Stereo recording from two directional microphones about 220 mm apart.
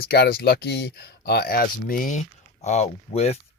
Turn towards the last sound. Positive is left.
turn(degrees=30)  # may be behind; listen again after turning